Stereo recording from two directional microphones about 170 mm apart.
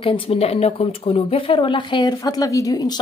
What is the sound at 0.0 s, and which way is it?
A woman's voice, 35° left (ahead or behind).